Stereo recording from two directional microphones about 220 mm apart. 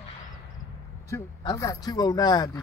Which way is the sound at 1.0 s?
15° left (ahead or behind).